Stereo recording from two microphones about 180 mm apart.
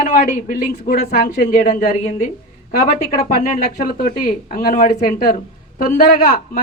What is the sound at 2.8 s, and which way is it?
Speech, 40° left (ahead or behind).